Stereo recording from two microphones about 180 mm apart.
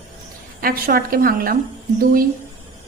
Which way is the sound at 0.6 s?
55° right (ahead or behind).